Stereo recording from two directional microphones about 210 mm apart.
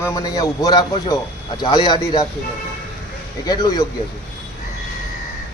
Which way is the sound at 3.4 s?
20° left (ahead or behind).